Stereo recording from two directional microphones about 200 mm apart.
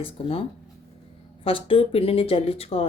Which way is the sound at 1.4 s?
25° left (ahead or behind).